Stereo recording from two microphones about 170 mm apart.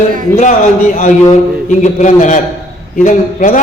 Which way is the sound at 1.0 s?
45° left (ahead or behind).